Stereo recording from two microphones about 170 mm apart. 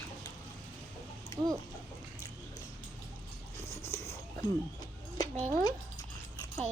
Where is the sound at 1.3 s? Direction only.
15° left (ahead or behind).